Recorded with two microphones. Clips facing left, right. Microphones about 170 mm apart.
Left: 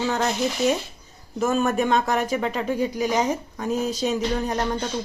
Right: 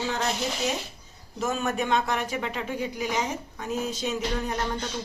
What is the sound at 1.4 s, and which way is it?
Speech, 50° left (ahead or behind).